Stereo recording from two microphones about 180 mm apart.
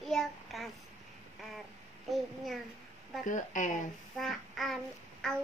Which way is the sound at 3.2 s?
45° left (ahead or behind).